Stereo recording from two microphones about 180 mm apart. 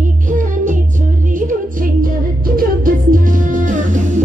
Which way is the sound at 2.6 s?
50° right (ahead or behind).